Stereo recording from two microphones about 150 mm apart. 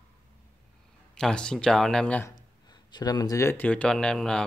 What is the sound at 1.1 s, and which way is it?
Speech, 5° left (ahead or behind).